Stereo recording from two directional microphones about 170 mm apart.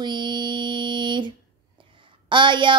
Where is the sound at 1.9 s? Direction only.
30° right (ahead or behind).